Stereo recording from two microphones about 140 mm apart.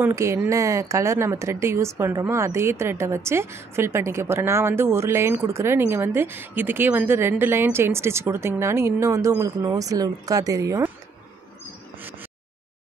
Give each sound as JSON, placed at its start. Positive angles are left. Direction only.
{"t": 0.0, "sound": "speech", "side_deg": -20}